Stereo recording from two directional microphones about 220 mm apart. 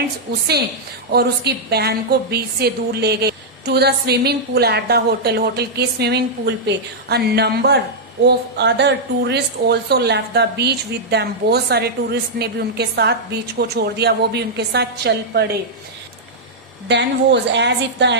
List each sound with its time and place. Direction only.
1.1 s a woman's voice: 45° right (ahead or behind)
16.9 s a woman's voice: 50° right (ahead or behind)